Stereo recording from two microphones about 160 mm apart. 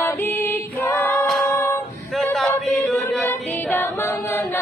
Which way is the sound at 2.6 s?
Centre (ahead or behind).